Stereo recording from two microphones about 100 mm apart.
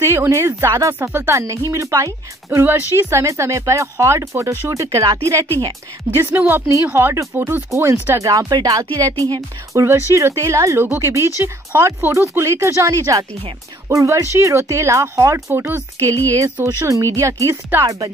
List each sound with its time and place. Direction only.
0.0 s speech: 25° right (ahead or behind)
2.6 s speech: 20° right (ahead or behind)
6.1 s speech: 25° right (ahead or behind)